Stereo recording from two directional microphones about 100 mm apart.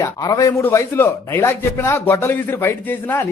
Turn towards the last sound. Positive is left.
turn(degrees=25)  # may be behind; listen again after turning